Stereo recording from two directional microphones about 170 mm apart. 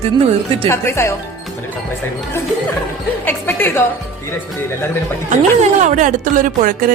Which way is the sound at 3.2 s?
10° left (ahead or behind).